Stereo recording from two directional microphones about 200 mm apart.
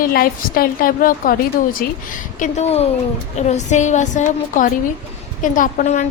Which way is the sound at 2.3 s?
35° left (ahead or behind).